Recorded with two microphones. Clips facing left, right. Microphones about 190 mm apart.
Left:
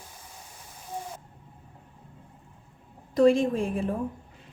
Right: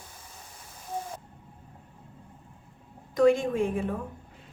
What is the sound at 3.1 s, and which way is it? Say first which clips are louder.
Speech: left 1 dB; 30° left (ahead or behind).